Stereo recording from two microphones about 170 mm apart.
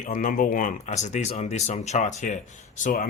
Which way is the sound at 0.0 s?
50° left (ahead or behind).